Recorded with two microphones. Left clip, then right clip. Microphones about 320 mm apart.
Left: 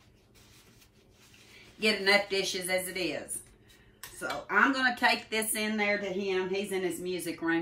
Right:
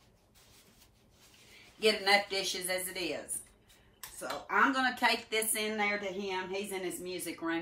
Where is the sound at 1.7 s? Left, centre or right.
Centre.